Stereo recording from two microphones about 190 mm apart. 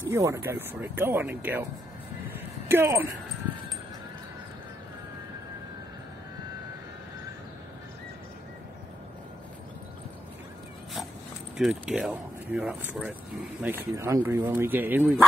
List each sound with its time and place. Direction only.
0.1 s speech: 15° right (ahead or behind)
2.7 s speech: 10° right (ahead or behind)
11.5 s speech: centre (ahead or behind)